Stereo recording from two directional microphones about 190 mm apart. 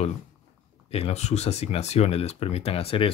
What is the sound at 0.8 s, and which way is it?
Speech, 30° left (ahead or behind).